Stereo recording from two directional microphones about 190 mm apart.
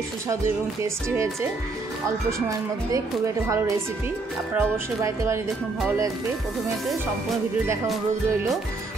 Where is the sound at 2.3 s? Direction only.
15° right (ahead or behind).